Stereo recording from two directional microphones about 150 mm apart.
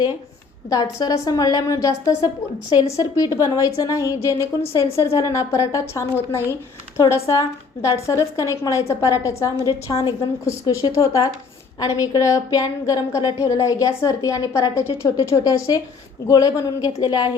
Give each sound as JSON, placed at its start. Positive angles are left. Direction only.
{"t": 0.7, "sound": "a woman's voice", "side_deg": 25}